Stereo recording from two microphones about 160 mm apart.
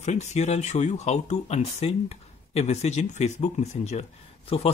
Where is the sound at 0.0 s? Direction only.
45° left (ahead or behind).